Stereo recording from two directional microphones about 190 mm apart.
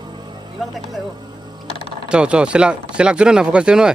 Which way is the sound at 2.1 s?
5° right (ahead or behind).